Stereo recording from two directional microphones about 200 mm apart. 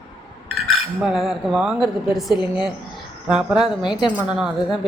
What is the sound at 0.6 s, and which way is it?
A woman's voice, centre (ahead or behind).